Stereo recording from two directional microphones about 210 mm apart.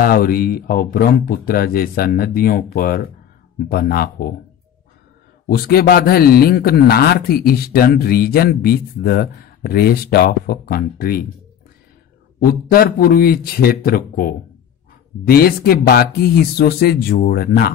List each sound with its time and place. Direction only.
0.0 s speech: 45° left (ahead or behind)
5.5 s speech: 45° left (ahead or behind)
12.4 s speech: 45° left (ahead or behind)